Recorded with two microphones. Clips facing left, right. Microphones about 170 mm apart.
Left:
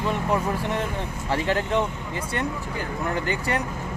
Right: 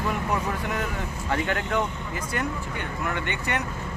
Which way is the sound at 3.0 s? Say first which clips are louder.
Left 4 dB; 35° left (ahead or behind).